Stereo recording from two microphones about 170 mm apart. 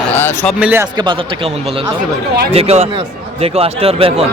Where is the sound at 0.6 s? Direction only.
10° right (ahead or behind).